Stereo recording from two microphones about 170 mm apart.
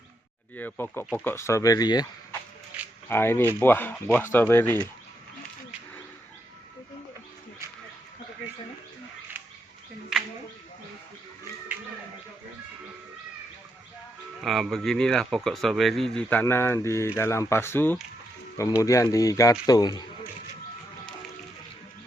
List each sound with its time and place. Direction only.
0.5 s speech: 10° left (ahead or behind)
3.1 s speech: 15° left (ahead or behind)
14.4 s speech: centre (ahead or behind); by 20.1 s 25° left (ahead or behind)